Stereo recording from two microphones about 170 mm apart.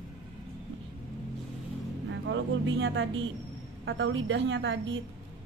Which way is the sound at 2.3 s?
90° right.